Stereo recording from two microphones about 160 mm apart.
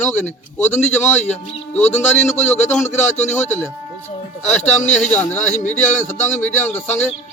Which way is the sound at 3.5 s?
15° left (ahead or behind).